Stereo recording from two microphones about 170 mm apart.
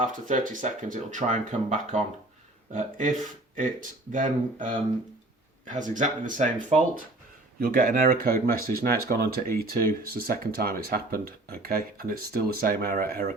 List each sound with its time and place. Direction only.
0.0 s speech: 45° right (ahead or behind)